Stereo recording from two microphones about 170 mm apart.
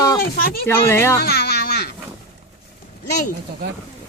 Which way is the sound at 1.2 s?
65° left (ahead or behind).